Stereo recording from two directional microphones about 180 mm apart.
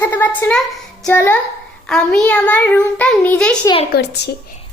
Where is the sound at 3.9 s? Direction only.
70° left (ahead or behind).